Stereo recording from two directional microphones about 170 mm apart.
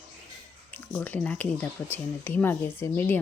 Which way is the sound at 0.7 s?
10° left (ahead or behind).